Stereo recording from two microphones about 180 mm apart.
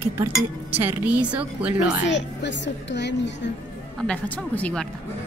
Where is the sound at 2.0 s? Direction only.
80° left.